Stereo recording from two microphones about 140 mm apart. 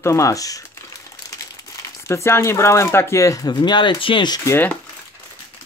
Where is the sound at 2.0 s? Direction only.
20° left (ahead or behind).